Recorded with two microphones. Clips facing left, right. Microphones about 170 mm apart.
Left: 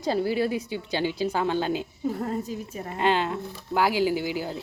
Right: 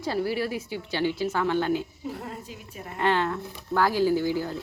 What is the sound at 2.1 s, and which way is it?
Speech, 45° left (ahead or behind).